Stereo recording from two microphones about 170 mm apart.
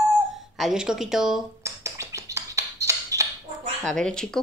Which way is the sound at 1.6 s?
20° right (ahead or behind).